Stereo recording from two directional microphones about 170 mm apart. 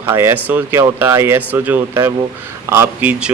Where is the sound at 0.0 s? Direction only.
15° right (ahead or behind).